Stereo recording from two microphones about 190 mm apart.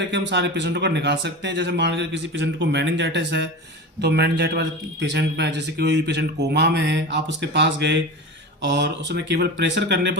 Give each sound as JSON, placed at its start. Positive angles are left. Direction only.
{"t": 0.1, "sound": "a man's voice", "side_deg": -65}